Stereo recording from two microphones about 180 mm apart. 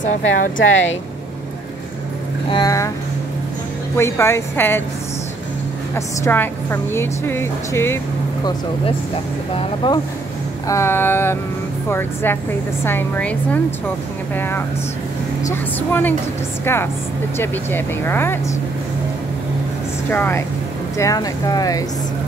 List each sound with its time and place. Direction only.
0.0 s a woman's voice: 45° left (ahead or behind)
2.5 s speech: 20° left (ahead or behind)
3.9 s a woman's voice: 15° left (ahead or behind)
5.9 s a woman's voice: 15° left (ahead or behind)
9.8 s speech: 25° left (ahead or behind)
10.7 s a woman's voice: 15° left (ahead or behind)
20.1 s a woman's voice: 10° left (ahead or behind)